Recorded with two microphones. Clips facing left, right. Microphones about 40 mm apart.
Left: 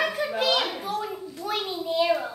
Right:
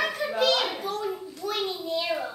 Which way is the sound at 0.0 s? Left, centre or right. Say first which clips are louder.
Even; centre.